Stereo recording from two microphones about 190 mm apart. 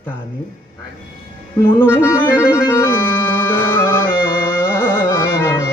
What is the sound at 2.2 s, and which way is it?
Music, 10° left (ahead or behind).